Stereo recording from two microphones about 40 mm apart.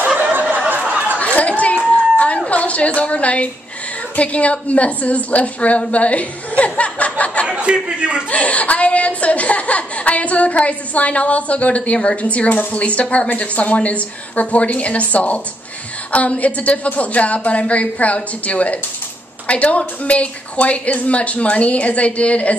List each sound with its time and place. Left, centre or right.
0.3 s a sound: right
0.8 s chatter: right
1.2 s chatter: left
2.1 s a sound: left
2.5 s a woman's voice: left
7.4 s speech: right
8.3 s a woman's voice: left